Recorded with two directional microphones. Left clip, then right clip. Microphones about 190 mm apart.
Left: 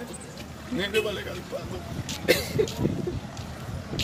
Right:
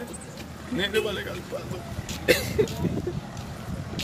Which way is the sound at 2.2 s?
5° right (ahead or behind).